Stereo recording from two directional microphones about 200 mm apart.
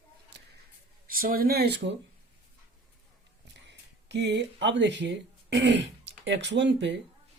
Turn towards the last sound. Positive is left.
turn(degrees=-60)  # may be behind; listen again after turning